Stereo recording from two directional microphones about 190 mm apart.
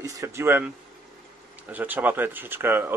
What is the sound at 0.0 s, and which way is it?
Speech, 15° right (ahead or behind).